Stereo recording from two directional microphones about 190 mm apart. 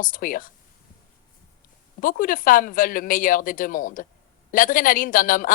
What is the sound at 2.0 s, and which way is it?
A woman's voice, 45° left (ahead or behind).